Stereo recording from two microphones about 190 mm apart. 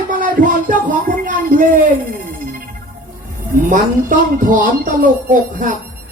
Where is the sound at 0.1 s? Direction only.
45° right (ahead or behind).